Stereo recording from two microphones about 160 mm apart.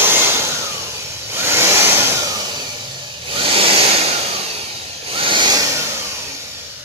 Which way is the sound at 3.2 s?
35° right (ahead or behind).